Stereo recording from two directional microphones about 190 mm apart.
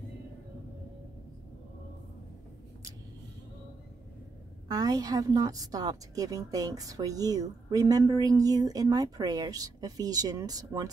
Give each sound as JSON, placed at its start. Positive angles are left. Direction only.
{"t": 4.6, "sound": "a woman's voice", "side_deg": -20}